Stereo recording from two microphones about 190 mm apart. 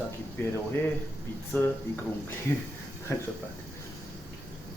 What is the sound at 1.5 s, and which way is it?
Speech, 10° left (ahead or behind).